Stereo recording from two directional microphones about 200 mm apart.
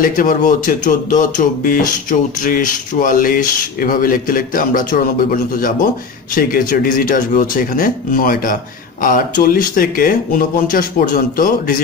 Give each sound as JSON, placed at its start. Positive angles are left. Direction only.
{"t": 0.0, "sound": "speech", "side_deg": 45}